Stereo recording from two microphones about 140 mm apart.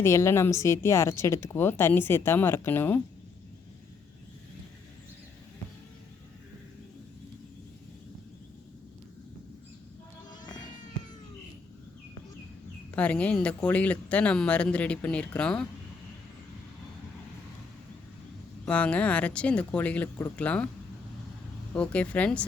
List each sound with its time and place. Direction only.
0.0 s a woman's voice: 20° left (ahead or behind)
10.4 s cat: 30° left (ahead or behind)
12.9 s speech: 10° left (ahead or behind)
18.6 s speech: 10° left (ahead or behind)
21.8 s speech: 10° left (ahead or behind)